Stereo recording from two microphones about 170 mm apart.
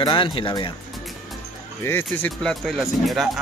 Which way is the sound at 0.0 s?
25° left (ahead or behind).